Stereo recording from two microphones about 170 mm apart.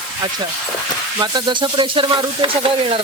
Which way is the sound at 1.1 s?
25° right (ahead or behind).